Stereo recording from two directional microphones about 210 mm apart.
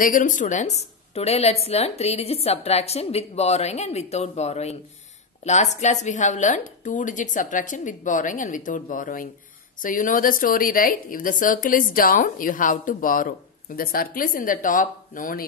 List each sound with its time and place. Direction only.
0.0 s a woman's voice: 40° left (ahead or behind)